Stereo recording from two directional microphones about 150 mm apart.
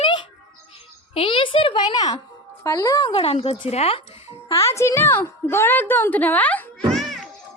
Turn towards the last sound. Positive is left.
turn(degrees=0)  # may be behind; listen again after turning